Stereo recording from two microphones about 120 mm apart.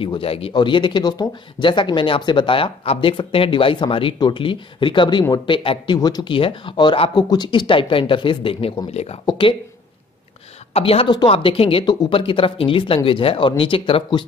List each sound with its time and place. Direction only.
0.0 s speech: 50° left (ahead or behind)
5.9 s speech: 35° left (ahead or behind); by 8.7 s 50° left (ahead or behind)
8.9 s speech: 60° left (ahead or behind)
9.2 s speech: 40° left (ahead or behind)
10.7 s a woman's voice: 55° left (ahead or behind)
11.8 s speech: 35° left (ahead or behind)